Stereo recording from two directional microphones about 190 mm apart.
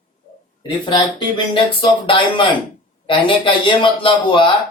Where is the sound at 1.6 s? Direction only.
25° left (ahead or behind).